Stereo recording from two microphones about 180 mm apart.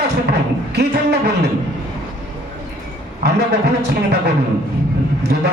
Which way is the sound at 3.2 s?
65° right (ahead or behind).